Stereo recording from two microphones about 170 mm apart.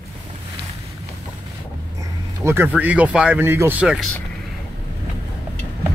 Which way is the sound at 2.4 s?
15° right (ahead or behind).